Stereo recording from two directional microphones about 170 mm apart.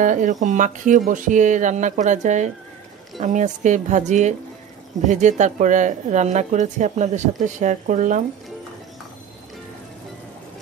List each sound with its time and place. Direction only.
0.0 s a woman's voice: 50° right (ahead or behind)